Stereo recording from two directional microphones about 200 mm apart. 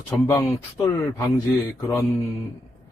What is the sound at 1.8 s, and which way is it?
Speech, 20° left (ahead or behind).